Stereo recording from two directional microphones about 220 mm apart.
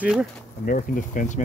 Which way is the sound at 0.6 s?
40° left (ahead or behind).